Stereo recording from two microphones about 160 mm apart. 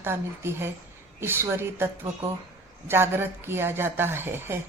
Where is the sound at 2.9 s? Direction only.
15° right (ahead or behind).